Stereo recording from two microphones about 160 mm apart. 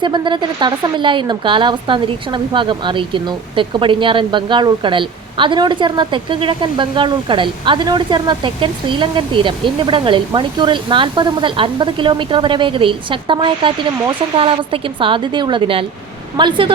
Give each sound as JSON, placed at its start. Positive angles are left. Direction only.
{"t": 0.0, "sound": "speech", "side_deg": -30}